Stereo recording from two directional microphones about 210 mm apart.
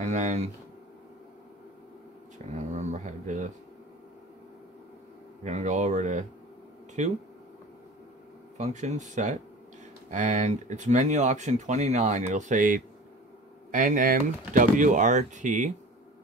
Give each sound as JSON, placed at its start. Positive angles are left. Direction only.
{"t": 0.0, "sound": "speech", "side_deg": -35}
{"t": 2.3, "sound": "speech", "side_deg": -35}
{"t": 5.4, "sound": "speech", "side_deg": -35}
{"t": 8.5, "sound": "speech", "side_deg": -35}